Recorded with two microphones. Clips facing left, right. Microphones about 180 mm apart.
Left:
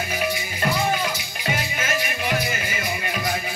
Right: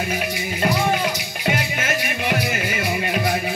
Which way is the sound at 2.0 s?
65° right (ahead or behind).